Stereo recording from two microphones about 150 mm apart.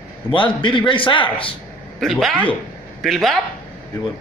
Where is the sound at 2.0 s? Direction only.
Centre (ahead or behind).